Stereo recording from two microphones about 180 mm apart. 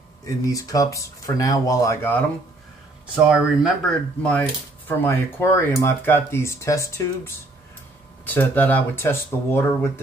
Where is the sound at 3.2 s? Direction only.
5° right (ahead or behind); by 7.0 s 15° left (ahead or behind).